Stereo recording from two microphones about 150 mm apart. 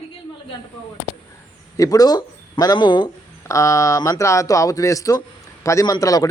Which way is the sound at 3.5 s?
20° left (ahead or behind).